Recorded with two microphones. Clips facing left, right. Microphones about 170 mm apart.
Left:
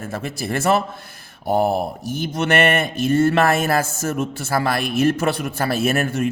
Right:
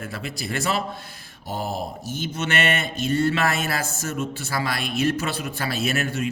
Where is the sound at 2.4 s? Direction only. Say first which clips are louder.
Left 7 dB; 55° left (ahead or behind).